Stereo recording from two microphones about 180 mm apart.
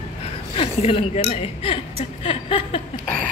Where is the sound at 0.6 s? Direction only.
35° left (ahead or behind).